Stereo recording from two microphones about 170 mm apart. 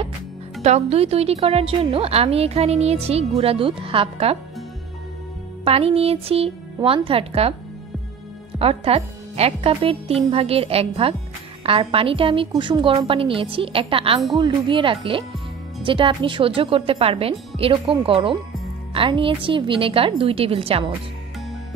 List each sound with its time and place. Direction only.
0.6 s a woman's voice: 40° right (ahead or behind)
5.7 s a woman's voice: 35° right (ahead or behind)
8.5 s a woman's voice: 35° right (ahead or behind)